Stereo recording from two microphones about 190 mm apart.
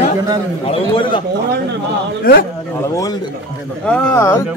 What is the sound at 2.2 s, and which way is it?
Speech, 50° left (ahead or behind).